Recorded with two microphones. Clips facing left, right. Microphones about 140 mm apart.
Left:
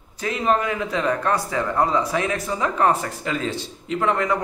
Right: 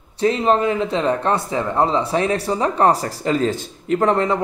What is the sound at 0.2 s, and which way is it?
Speech, 30° right (ahead or behind).